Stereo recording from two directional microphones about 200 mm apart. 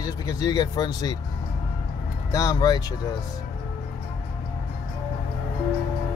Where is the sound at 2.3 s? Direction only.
15° left (ahead or behind).